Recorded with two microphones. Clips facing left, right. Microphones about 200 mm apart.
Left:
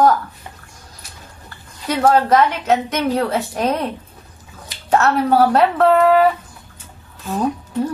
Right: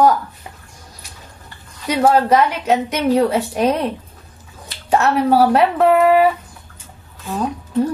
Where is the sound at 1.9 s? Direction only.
10° right (ahead or behind).